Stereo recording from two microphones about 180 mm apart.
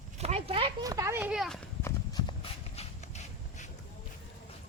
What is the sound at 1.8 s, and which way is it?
Horse, 20° left (ahead or behind).